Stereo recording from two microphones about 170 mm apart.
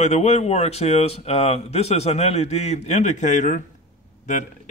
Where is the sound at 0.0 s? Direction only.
40° left (ahead or behind).